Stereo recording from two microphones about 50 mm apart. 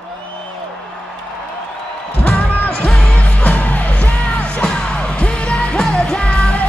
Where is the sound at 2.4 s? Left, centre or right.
Left.